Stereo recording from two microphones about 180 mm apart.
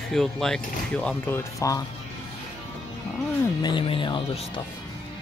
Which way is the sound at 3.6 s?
30° left (ahead or behind).